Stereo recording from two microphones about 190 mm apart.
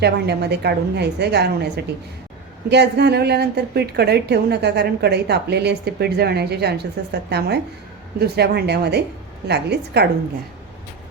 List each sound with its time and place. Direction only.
0.0 s a woman's voice: 60° right (ahead or behind)